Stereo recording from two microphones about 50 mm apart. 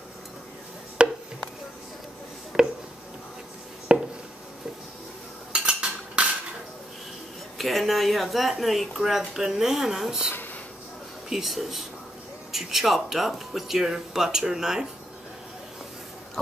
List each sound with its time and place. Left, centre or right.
1.0 s chopping: centre
2.5 s a sound: centre
3.9 s a sound: centre
5.5 s cutlery: centre
7.5 s a woman's voice: centre
11.2 s a woman's voice: centre